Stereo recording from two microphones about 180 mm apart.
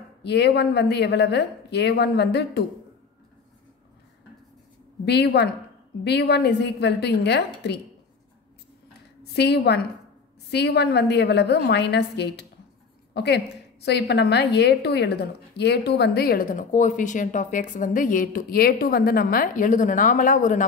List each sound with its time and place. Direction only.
0.2 s speech: 70° left (ahead or behind)
5.0 s speech: 65° left (ahead or behind)
9.3 s a woman's voice: 65° left (ahead or behind); by 20.6 s 45° left (ahead or behind)